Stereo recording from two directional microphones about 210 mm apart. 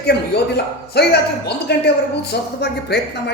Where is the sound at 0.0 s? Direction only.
50° left (ahead or behind).